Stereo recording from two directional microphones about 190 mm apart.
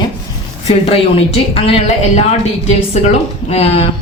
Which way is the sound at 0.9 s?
30° left (ahead or behind).